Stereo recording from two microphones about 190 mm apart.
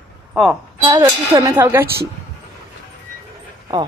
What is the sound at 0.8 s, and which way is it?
A woman's voice, 25° right (ahead or behind).